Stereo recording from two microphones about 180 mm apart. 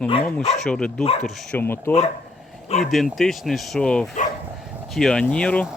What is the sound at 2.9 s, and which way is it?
Speech, centre (ahead or behind).